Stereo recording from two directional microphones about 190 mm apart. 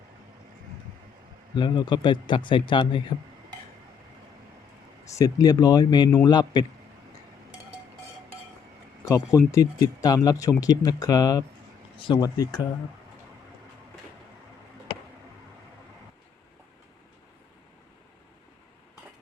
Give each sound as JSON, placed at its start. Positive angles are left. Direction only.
{"t": 1.5, "sound": "speech", "side_deg": 25}
{"t": 5.0, "sound": "speech", "side_deg": 15}
{"t": 9.0, "sound": "speech", "side_deg": 15}